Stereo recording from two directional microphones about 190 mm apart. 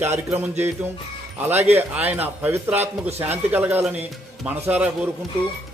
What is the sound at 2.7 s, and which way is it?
Speech, 35° right (ahead or behind).